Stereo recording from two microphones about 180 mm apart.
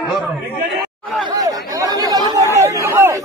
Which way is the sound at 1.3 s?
20° right (ahead or behind).